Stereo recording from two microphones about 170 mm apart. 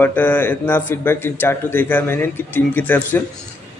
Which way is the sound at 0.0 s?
10° left (ahead or behind).